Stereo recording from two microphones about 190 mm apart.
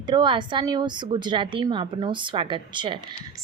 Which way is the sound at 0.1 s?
25° right (ahead or behind).